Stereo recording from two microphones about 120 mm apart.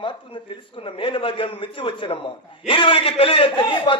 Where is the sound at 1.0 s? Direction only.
45° left (ahead or behind).